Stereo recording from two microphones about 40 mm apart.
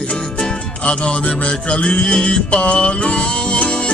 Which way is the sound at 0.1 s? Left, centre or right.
Centre.